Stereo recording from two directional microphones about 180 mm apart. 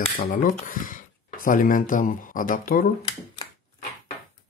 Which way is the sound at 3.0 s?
30° left (ahead or behind).